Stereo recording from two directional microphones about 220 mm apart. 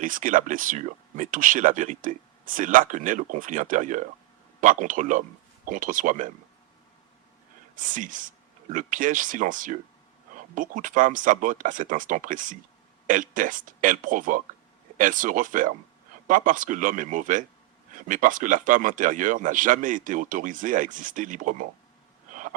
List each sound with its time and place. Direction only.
0.0 s speech: 35° right (ahead or behind)
7.9 s speech: 35° right (ahead or behind)
22.3 s a sound: 35° right (ahead or behind)